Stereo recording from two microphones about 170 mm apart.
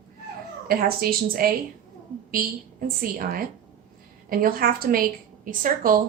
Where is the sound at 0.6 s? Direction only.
60° right (ahead or behind).